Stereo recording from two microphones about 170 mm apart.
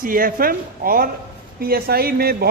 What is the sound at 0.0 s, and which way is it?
Speech, 55° right (ahead or behind).